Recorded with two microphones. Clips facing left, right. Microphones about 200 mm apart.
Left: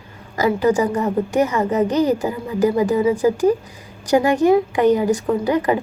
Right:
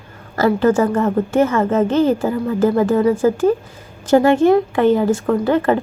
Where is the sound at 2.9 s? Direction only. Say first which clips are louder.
Right 2 dB; 55° right (ahead or behind).